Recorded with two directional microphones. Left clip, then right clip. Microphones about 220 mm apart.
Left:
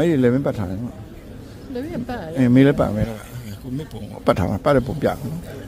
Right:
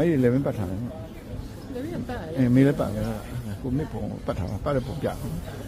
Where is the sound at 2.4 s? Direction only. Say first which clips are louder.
Left 6 dB; 35° left (ahead or behind).